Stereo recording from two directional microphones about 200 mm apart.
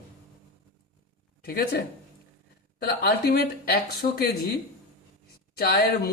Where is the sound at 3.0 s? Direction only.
50° left (ahead or behind).